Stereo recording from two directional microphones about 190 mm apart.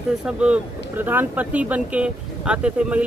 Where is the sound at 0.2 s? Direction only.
5° right (ahead or behind).